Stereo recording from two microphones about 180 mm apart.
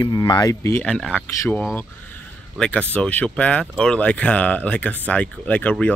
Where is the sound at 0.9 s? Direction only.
5° left (ahead or behind).